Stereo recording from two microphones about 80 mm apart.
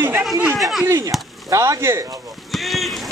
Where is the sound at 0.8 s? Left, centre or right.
Right.